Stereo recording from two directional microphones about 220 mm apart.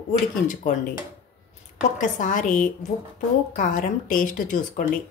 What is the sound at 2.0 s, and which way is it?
A woman's voice, 35° left (ahead or behind).